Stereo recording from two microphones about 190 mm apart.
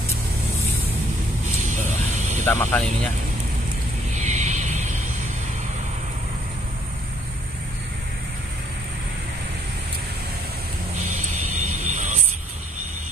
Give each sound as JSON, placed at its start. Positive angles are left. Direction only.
{"t": 1.6, "sound": "music", "side_deg": -40}
{"t": 2.4, "sound": "speech", "side_deg": 10}
{"t": 4.1, "sound": "vehicle", "side_deg": -40}
{"t": 11.0, "sound": "vehicle", "side_deg": -40}
{"t": 11.9, "sound": "music", "side_deg": -40}